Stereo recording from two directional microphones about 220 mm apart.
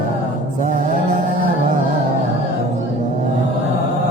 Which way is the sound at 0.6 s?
35° right (ahead or behind).